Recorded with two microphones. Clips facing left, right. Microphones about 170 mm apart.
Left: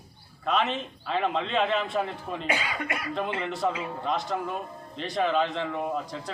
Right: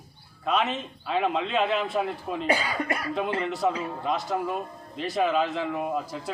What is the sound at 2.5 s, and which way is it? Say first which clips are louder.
Speech: right 4 dB; 35° right (ahead or behind).